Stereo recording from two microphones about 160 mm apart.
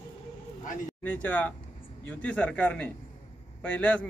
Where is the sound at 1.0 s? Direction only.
10° left (ahead or behind).